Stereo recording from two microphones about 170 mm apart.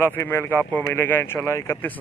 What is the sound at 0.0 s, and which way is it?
Speech, 15° left (ahead or behind).